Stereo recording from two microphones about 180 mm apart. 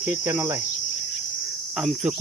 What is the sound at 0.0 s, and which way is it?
Cricket, 10° right (ahead or behind).